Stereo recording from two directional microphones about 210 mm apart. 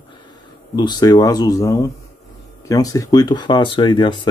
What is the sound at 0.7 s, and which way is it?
Speech, 20° left (ahead or behind).